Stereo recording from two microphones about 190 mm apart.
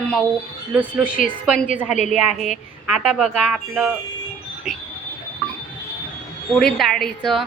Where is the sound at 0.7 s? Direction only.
5° right (ahead or behind).